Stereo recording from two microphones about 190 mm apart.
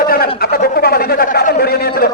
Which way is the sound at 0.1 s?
50° left (ahead or behind).